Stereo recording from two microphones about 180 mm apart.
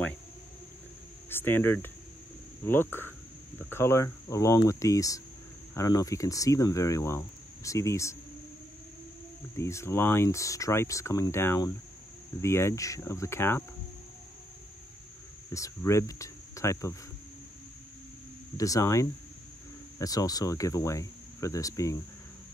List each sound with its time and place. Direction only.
1.3 s speech: 10° left (ahead or behind)
9.6 s speech: 15° left (ahead or behind)
15.5 s speech: 15° left (ahead or behind)
18.6 s speech: 20° left (ahead or behind)